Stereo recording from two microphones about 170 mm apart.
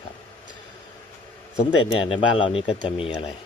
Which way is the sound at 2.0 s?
30° left (ahead or behind).